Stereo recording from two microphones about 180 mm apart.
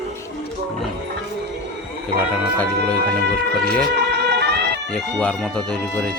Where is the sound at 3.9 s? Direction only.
70° right (ahead or behind).